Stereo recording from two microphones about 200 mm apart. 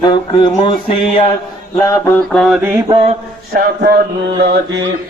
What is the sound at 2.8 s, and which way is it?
Mantra, 30° right (ahead or behind).